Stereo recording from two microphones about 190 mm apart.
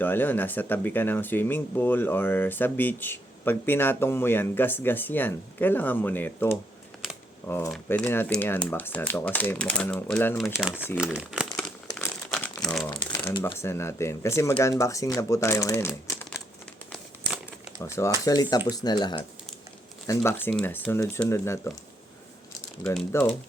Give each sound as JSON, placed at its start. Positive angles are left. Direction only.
{"t": 0.0, "sound": "speech", "side_deg": 10}
{"t": 11.9, "sound": "crumpling", "side_deg": 15}
{"t": 13.4, "sound": "speech", "side_deg": 15}
{"t": 16.9, "sound": "crumpling", "side_deg": 0}
{"t": 17.7, "sound": "speech", "side_deg": 15}
{"t": 23.0, "sound": "speech", "side_deg": 10}